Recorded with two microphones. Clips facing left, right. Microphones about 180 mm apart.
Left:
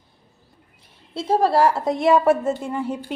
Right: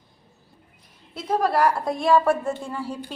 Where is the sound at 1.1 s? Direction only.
30° left (ahead or behind).